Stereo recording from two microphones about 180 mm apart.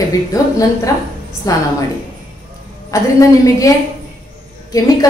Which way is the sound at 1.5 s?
20° left (ahead or behind).